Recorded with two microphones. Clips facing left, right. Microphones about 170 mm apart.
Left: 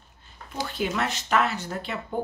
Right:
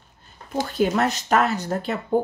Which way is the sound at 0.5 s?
45° right (ahead or behind).